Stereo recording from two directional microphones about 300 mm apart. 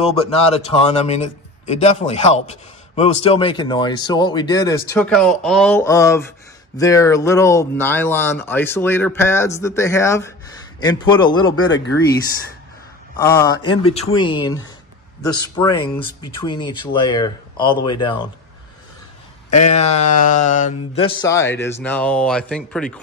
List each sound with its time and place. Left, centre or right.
0.0 s a man's voice: left
13.2 s a man's voice: centre
19.6 s a man's voice: left; by 22.9 s centre